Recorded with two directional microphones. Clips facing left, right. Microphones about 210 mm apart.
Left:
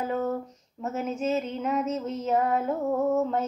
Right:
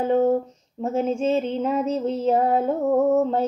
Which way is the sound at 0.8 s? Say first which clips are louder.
Right 6 dB; 30° right (ahead or behind).